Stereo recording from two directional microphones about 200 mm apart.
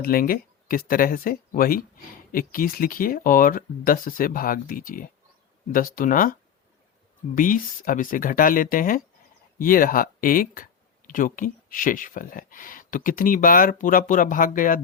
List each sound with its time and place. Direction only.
0.0 s speech: 45° left (ahead or behind)
7.3 s speech: 40° left (ahead or behind)